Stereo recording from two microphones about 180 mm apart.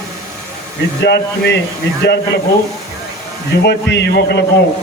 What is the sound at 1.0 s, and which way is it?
Speech, 70° left (ahead or behind).